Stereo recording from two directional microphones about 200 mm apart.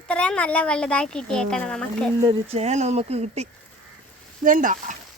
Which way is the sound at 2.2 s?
30° right (ahead or behind).